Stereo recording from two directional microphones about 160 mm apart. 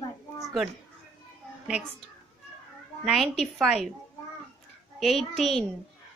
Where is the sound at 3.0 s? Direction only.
Centre (ahead or behind).